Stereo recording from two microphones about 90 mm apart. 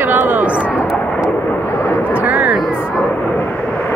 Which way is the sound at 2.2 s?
15° right (ahead or behind).